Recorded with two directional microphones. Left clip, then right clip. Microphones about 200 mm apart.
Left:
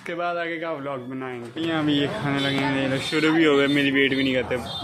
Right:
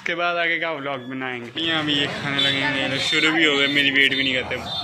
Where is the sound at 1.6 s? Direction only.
45° left (ahead or behind).